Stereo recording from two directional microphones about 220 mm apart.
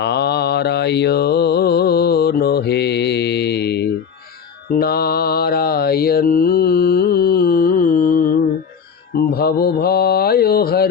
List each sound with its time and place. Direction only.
0.0 s mantra: 50° left (ahead or behind)